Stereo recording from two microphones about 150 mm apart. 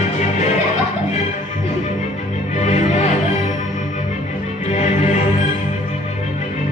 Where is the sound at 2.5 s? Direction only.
50° left (ahead or behind).